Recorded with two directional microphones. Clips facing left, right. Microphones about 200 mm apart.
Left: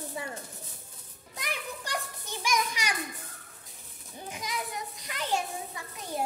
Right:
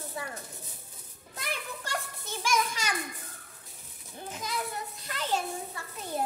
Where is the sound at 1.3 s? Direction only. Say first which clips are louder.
Even; 15° left (ahead or behind).